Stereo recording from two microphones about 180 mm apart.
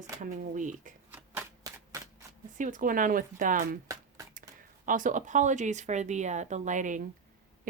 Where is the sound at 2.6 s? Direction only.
45° right (ahead or behind).